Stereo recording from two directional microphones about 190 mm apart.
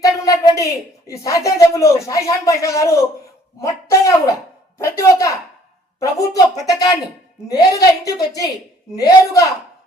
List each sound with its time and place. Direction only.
0.0 s a woman's voice: 20° left (ahead or behind)